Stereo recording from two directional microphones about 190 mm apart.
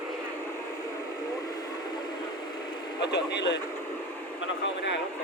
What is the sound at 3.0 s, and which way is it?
Speech, 65° left (ahead or behind).